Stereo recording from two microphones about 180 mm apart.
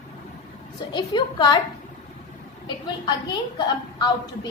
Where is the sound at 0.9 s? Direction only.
25° left (ahead or behind).